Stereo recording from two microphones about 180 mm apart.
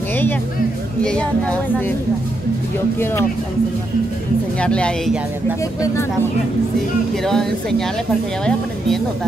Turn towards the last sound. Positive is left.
turn(degrees=0)  # may be behind; listen again after turning